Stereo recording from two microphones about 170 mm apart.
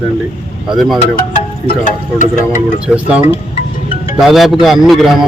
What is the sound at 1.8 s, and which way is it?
Speech, 50° left (ahead or behind).